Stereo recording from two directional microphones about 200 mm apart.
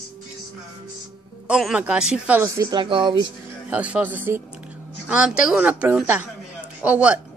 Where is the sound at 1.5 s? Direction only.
5° right (ahead or behind); by 3.2 s 25° right (ahead or behind).